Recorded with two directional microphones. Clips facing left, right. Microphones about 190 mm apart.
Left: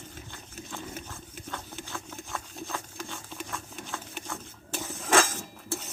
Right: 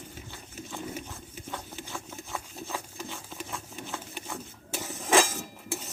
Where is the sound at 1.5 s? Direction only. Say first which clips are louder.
Even; 15° right (ahead or behind).